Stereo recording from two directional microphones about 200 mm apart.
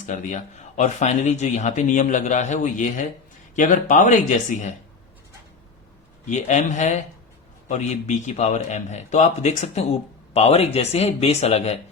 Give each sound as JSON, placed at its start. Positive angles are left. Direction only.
{"t": 0.0, "sound": "speech", "side_deg": 40}
{"t": 6.2, "sound": "speech", "side_deg": 35}